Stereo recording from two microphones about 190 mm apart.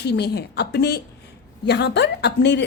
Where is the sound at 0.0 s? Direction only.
60° left (ahead or behind).